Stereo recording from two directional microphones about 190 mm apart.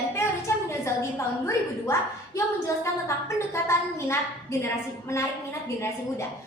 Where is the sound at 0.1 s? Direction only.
15° left (ahead or behind).